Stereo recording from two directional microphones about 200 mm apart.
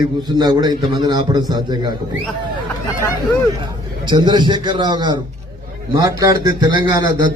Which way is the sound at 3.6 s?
20° right (ahead or behind).